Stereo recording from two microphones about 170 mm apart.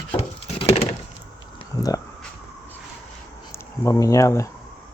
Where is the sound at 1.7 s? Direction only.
20° left (ahead or behind).